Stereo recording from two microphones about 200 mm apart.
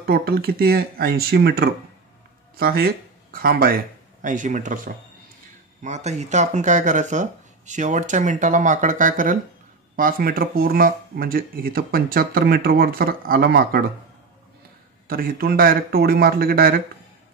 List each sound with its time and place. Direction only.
0.0 s speech: 50° right (ahead or behind)
15.0 s speech: 45° right (ahead or behind)